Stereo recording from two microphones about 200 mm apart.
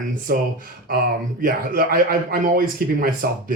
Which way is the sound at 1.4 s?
45° right (ahead or behind).